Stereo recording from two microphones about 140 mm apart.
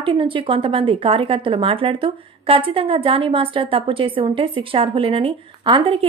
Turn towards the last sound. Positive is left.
turn(degrees=-35)  # may be behind; listen again after turning